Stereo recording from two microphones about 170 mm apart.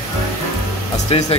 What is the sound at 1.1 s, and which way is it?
Speech, 35° left (ahead or behind).